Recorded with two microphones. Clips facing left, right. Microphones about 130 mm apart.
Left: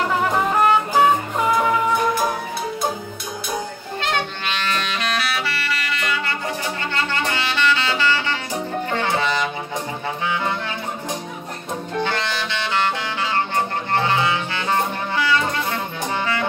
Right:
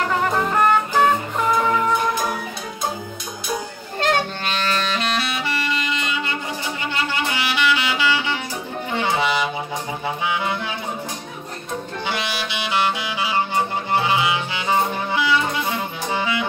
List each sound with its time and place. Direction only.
0.2 s music: 10° left (ahead or behind)
4.0 s music: 40° right (ahead or behind); by 10.5 s 10° right (ahead or behind)
12.0 s music: 10° right (ahead or behind)